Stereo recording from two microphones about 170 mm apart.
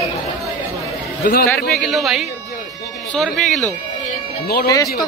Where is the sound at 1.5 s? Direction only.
Centre (ahead or behind).